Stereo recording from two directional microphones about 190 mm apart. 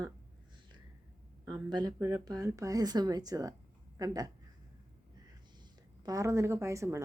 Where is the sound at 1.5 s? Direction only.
20° right (ahead or behind).